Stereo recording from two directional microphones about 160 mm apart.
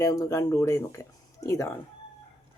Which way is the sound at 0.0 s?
20° left (ahead or behind).